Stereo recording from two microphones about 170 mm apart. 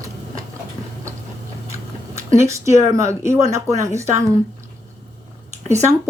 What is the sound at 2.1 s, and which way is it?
A woman's voice, 15° right (ahead or behind).